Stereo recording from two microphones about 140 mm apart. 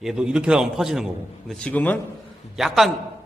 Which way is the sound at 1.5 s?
10° left (ahead or behind).